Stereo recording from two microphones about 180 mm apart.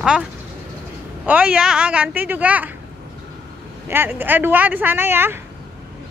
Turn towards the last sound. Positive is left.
turn(degrees=-10)  # may be behind; listen again after turning